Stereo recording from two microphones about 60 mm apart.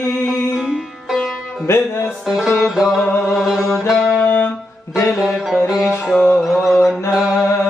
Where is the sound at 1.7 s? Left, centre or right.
Left.